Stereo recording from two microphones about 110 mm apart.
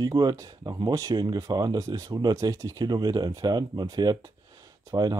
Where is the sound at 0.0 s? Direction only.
35° right (ahead or behind).